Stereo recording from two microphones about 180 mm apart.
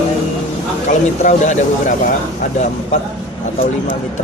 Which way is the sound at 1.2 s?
40° left (ahead or behind).